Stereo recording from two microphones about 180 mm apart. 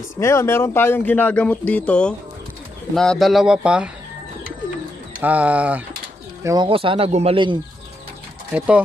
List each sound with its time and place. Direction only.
0.2 s a man's voice: 15° left (ahead or behind); by 3.9 s 5° right (ahead or behind)
5.2 s speech: 10° right (ahead or behind)
6.4 s speech: 25° right (ahead or behind)
8.5 s speech: 5° right (ahead or behind)